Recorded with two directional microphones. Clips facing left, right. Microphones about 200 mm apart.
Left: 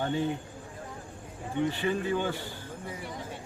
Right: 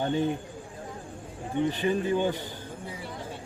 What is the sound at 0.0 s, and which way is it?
Speech, 20° right (ahead or behind).